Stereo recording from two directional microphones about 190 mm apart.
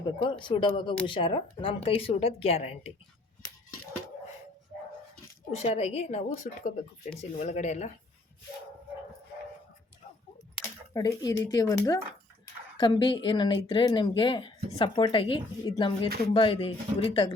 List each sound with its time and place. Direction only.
0.2 s a woman's voice: 25° left (ahead or behind)
5.5 s a woman's voice: 35° left (ahead or behind)
10.9 s speech: 20° left (ahead or behind)